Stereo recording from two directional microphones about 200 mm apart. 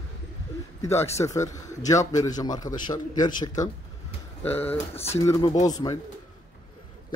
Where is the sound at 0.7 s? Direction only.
15° left (ahead or behind).